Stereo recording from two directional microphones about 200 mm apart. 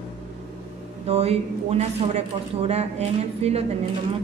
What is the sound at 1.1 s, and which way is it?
Speech, 30° right (ahead or behind).